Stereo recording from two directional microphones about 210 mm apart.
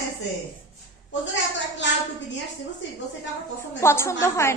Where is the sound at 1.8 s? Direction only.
60° left (ahead or behind).